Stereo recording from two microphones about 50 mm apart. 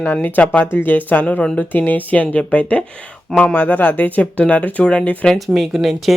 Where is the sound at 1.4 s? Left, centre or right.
Centre.